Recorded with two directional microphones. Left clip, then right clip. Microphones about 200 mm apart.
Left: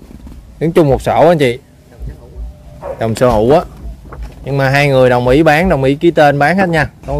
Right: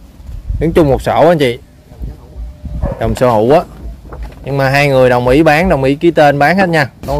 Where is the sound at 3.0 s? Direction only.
10° left (ahead or behind).